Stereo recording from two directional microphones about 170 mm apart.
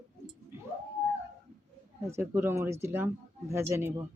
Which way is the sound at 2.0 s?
15° right (ahead or behind).